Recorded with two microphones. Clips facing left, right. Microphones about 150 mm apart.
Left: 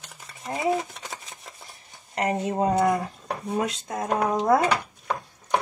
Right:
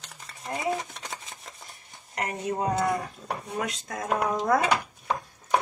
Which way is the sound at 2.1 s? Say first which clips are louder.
Left 5 dB; 30° left (ahead or behind).